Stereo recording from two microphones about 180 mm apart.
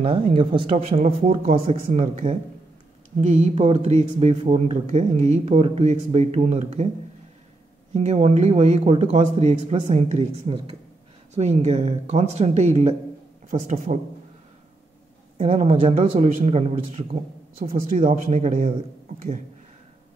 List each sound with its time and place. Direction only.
0.0 s speech: 30° right (ahead or behind)
7.9 s speech: 35° right (ahead or behind)
15.3 s speech: 35° right (ahead or behind)
17.9 s speech: 50° right (ahead or behind)